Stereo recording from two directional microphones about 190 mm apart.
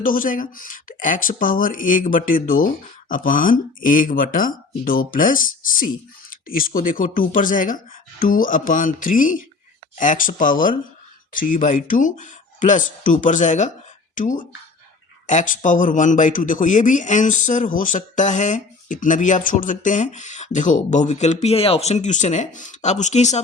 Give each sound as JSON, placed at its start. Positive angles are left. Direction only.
{"t": 0.0, "sound": "a man's voice", "side_deg": 45}